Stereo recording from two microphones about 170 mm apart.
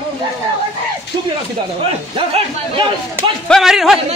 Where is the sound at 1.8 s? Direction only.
30° right (ahead or behind).